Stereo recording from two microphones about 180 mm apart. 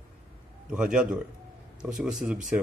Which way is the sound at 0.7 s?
5° right (ahead or behind).